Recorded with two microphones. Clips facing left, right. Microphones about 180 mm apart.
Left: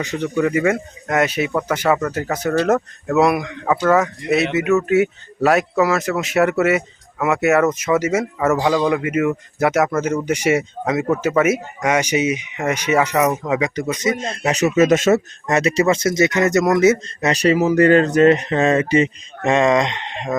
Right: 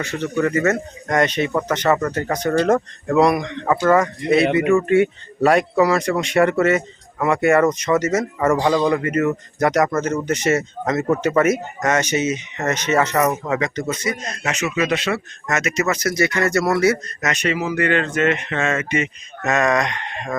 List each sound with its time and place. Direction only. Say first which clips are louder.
0.0 s a man's voice: left 1 dB; 15° left (ahead or behind)